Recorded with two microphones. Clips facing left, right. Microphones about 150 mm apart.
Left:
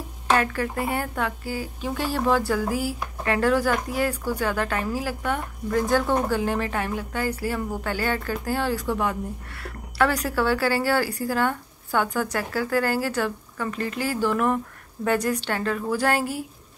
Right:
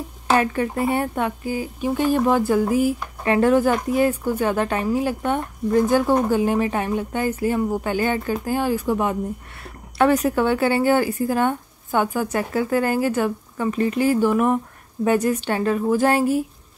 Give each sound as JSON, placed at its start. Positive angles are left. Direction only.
{"t": 0.3, "sound": "a woman's voice", "side_deg": -25}